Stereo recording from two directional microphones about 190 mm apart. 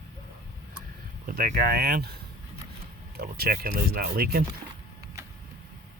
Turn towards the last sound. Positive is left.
turn(degrees=-50)  # may be behind; listen again after turning